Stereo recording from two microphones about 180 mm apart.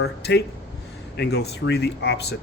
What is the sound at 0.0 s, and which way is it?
Speech, 65° left (ahead or behind).